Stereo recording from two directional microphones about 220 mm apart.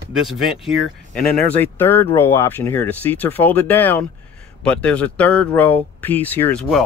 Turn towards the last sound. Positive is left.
turn(degrees=5)  # may be behind; listen again after turning